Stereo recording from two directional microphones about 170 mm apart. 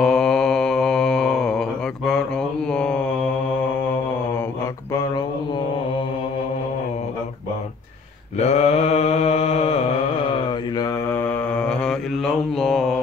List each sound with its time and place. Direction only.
0.0 s mantra: 5° left (ahead or behind)
4.9 s a sound: 20° left (ahead or behind)
8.4 s mantra: 40° left (ahead or behind)
10.8 s mantra: 15° left (ahead or behind); by 13.0 s centre (ahead or behind)